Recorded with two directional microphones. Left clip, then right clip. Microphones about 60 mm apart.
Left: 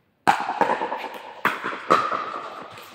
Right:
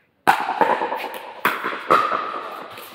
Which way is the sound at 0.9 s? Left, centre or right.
Centre.